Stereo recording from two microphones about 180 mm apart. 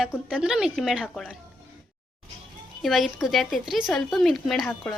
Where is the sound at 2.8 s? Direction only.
Centre (ahead or behind).